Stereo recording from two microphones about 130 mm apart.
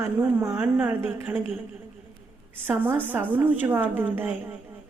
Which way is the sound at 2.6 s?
15° right (ahead or behind).